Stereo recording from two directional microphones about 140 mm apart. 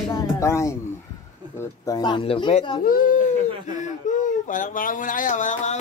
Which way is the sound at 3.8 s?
65° left (ahead or behind).